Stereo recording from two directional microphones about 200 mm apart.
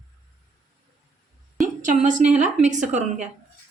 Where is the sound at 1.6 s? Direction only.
40° right (ahead or behind).